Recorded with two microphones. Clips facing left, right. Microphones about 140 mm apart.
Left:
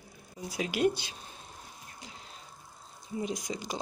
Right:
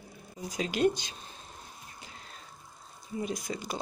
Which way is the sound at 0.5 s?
10° left (ahead or behind).